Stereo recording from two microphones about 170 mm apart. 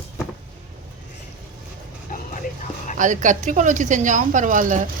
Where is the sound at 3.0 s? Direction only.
50° right (ahead or behind).